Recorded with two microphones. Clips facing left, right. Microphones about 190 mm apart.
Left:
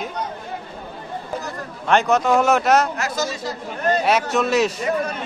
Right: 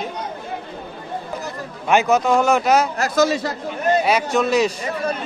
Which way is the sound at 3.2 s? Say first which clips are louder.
Right 11 dB; 60° right (ahead or behind).